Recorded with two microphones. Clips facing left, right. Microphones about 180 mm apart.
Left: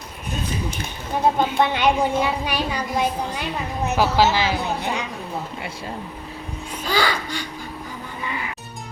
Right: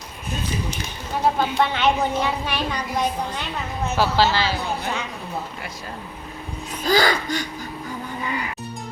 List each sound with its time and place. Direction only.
1.5 s a woman's voice: 15° left (ahead or behind)
6.8 s a child's voice: 40° right (ahead or behind)